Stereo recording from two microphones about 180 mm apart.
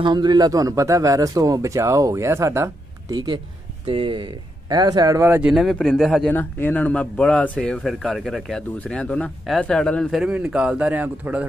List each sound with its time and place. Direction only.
0.0 s speech: 25° right (ahead or behind)
5.5 s speech: centre (ahead or behind)